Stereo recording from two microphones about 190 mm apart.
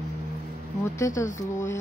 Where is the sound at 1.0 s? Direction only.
15° left (ahead or behind).